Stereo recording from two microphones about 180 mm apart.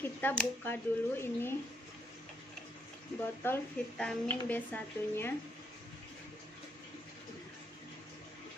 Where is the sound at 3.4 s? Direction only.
10° left (ahead or behind).